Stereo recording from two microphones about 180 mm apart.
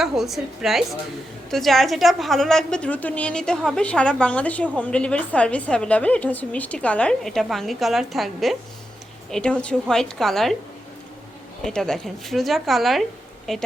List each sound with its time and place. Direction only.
0.0 s a woman's voice: centre (ahead or behind)
11.6 s a woman's voice: 5° left (ahead or behind)